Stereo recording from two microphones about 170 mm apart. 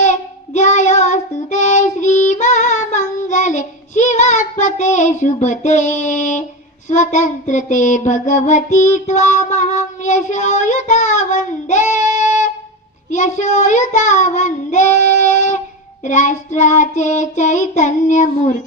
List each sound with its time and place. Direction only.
0.0 s child singing: 45° left (ahead or behind)